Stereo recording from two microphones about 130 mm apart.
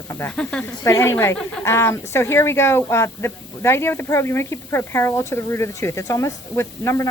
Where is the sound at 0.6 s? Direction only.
20° left (ahead or behind).